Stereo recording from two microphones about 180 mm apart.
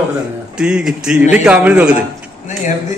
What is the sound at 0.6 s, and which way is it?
A man's voice, 5° right (ahead or behind).